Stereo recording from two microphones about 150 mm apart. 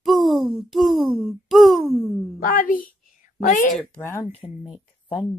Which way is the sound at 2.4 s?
65° left (ahead or behind).